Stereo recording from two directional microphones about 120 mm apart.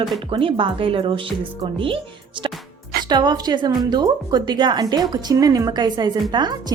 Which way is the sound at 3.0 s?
35° right (ahead or behind).